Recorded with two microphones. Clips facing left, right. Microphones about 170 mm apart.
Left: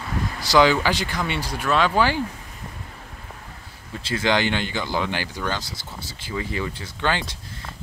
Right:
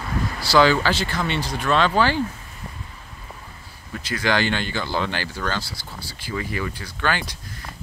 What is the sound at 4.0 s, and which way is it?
Speech, 25° left (ahead or behind).